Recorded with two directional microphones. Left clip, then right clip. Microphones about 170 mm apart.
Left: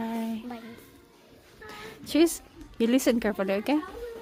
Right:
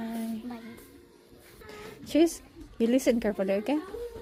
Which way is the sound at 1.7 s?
10° left (ahead or behind).